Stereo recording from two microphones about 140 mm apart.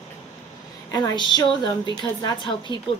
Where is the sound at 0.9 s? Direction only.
30° left (ahead or behind).